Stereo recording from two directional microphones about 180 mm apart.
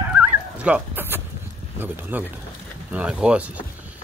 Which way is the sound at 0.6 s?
5° right (ahead or behind).